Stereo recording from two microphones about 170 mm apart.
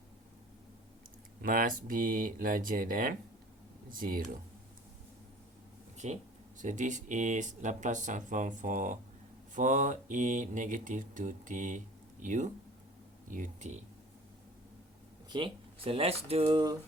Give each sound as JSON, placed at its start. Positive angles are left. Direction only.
{"t": 1.4, "sound": "speech", "side_deg": -55}
{"t": 6.0, "sound": "speech", "side_deg": -45}
{"t": 15.3, "sound": "speech", "side_deg": -30}